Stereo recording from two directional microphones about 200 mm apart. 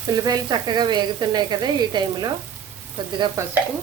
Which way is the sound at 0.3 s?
20° right (ahead or behind).